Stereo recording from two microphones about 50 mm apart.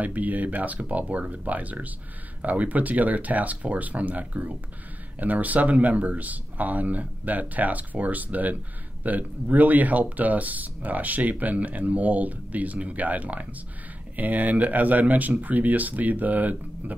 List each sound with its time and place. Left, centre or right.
0.0 s speech: right